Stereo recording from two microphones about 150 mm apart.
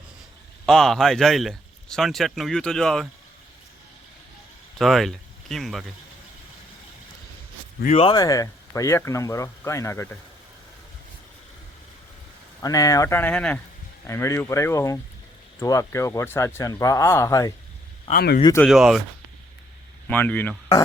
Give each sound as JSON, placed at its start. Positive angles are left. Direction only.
{"t": 0.6, "sound": "speech", "side_deg": 0}
{"t": 4.8, "sound": "speech", "side_deg": 0}
{"t": 7.9, "sound": "speech", "side_deg": 45}
{"t": 8.1, "sound": "speech", "side_deg": 25}
{"t": 12.6, "sound": "speech", "side_deg": 25}
{"t": 18.1, "sound": "speech", "side_deg": 90}
{"t": 18.6, "sound": "speech", "side_deg": 0}
{"t": 20.1, "sound": "speech", "side_deg": 10}